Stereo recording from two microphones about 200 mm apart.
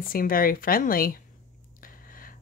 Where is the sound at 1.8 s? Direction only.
45° left (ahead or behind).